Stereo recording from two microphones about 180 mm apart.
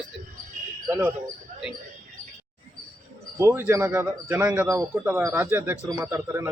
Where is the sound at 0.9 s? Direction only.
10° right (ahead or behind).